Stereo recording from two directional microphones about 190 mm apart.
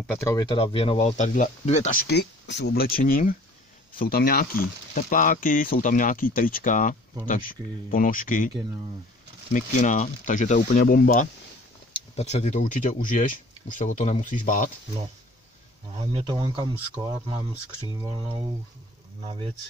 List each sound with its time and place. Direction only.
0.2 s speech: 20° left (ahead or behind); by 8.5 s 45° left (ahead or behind)
9.5 s speech: 40° left (ahead or behind)
11.9 s speech: 35° left (ahead or behind)
16.0 s speech: 30° right (ahead or behind)